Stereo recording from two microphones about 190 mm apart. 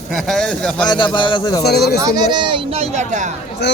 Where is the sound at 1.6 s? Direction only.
55° left (ahead or behind).